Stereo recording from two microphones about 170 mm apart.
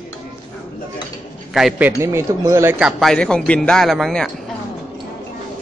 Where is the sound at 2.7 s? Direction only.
5° right (ahead or behind).